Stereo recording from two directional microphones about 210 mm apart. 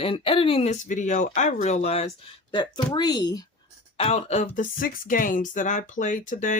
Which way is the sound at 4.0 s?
30° left (ahead or behind).